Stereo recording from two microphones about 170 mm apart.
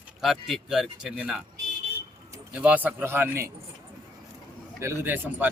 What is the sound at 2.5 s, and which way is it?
Speech, 10° right (ahead or behind).